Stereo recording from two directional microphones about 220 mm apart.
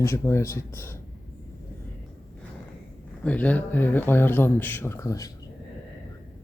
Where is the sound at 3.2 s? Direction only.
5° left (ahead or behind).